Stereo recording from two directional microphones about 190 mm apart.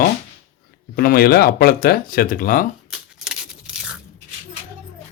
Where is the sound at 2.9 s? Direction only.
5° right (ahead or behind).